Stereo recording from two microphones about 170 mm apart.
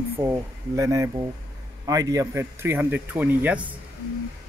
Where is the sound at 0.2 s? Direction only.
15° right (ahead or behind).